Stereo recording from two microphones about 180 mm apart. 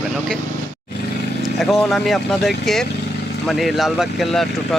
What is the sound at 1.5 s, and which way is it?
Speech, centre (ahead or behind).